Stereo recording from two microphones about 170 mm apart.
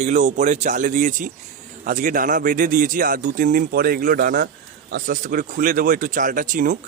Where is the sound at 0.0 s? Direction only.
40° right (ahead or behind).